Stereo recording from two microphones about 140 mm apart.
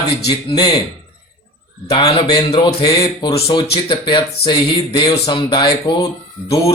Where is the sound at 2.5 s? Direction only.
35° left (ahead or behind).